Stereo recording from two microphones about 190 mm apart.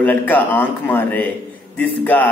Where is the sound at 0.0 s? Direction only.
10° left (ahead or behind).